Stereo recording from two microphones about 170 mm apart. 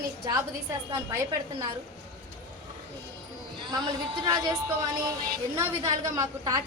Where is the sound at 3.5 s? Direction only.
25° right (ahead or behind).